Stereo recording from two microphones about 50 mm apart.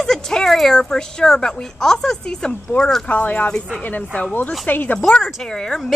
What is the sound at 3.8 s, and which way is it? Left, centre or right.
Speech, left.